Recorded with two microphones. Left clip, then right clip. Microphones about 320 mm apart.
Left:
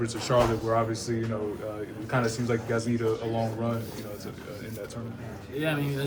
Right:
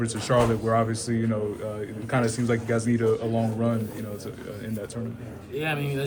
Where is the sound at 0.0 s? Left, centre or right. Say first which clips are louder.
Right 1 dB; right.